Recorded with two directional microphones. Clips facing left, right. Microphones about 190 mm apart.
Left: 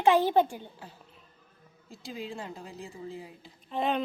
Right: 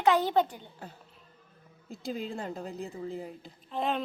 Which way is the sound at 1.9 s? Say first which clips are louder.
Right 4 dB; 40° right (ahead or behind).